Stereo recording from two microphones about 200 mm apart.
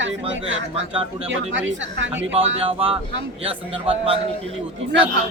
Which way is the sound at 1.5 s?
65° right (ahead or behind).